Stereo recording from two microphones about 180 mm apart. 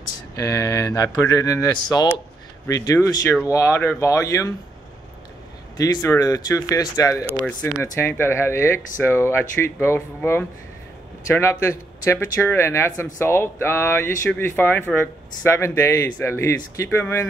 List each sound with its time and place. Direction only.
0.4 s speech: 15° left (ahead or behind)
5.8 s speech: 15° left (ahead or behind)